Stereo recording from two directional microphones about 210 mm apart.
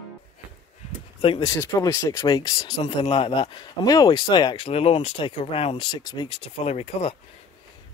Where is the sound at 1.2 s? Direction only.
25° left (ahead or behind).